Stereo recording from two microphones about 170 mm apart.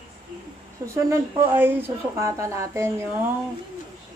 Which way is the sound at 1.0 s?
15° right (ahead or behind).